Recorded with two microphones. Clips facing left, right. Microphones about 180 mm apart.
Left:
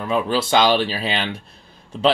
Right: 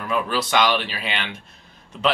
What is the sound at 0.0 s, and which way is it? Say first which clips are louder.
Speech: left 3 dB; 25° left (ahead or behind).